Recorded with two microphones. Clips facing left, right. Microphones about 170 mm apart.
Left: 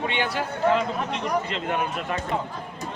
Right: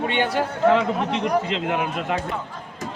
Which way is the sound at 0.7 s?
80° right.